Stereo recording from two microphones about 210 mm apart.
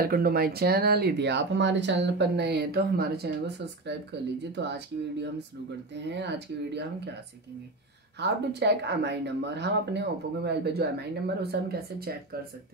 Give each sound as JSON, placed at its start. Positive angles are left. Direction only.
{"t": 0.0, "sound": "speech", "side_deg": -45}
{"t": 8.2, "sound": "speech", "side_deg": -55}